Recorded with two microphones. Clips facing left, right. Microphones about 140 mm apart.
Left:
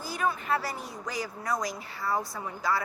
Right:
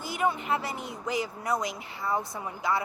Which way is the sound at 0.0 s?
20° right (ahead or behind).